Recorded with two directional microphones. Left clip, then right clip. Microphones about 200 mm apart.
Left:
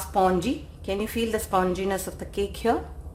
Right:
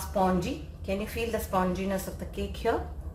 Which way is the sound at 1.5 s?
35° left (ahead or behind).